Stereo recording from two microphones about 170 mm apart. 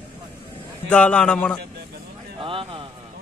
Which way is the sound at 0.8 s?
5° left (ahead or behind).